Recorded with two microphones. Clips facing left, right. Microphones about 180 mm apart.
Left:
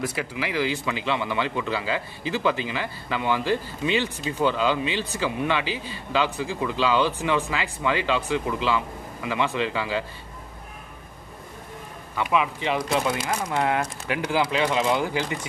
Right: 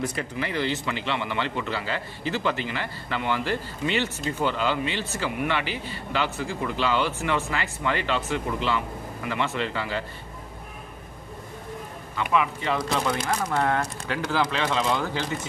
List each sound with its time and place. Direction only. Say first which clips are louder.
0.0 s speech: left 1 dB; 5° left (ahead or behind)
12.3 s speech: even; 15° left (ahead or behind)